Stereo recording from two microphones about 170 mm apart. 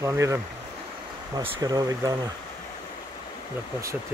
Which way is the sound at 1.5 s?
20° right (ahead or behind).